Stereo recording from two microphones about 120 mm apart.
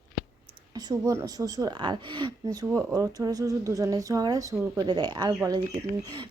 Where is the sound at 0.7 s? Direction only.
30° right (ahead or behind).